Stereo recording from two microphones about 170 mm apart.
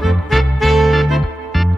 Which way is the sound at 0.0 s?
Centre (ahead or behind).